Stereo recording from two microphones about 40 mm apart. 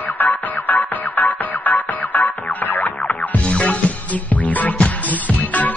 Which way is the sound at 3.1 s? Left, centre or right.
Left.